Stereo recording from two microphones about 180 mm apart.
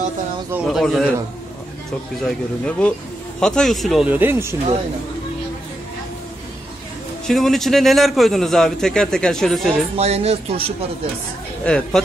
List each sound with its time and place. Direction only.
0.7 s a man's voice: centre (ahead or behind)
2.2 s a man's voice: 5° left (ahead or behind); by 4.6 s 10° right (ahead or behind)
7.2 s a man's voice: centre (ahead or behind)
9.9 s speech: 35° right (ahead or behind)
11.6 s a man's voice: 5° left (ahead or behind)